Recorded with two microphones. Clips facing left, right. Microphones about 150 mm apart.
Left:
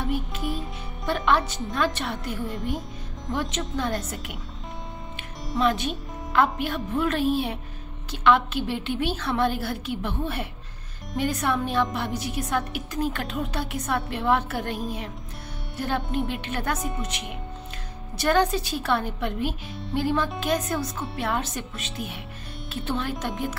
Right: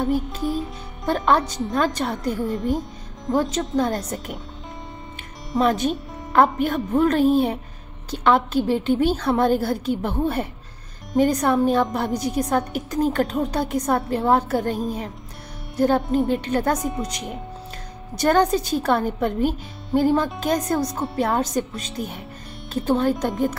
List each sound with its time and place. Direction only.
0.0 s music: 40° right (ahead or behind)
1.0 s a woman's voice: 45° right (ahead or behind)
5.6 s a woman's voice: 45° right (ahead or behind)
16.3 s a woman's voice: 40° right (ahead or behind)